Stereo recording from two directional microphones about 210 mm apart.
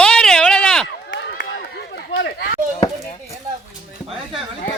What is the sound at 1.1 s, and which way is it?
Run, 55° left (ahead or behind).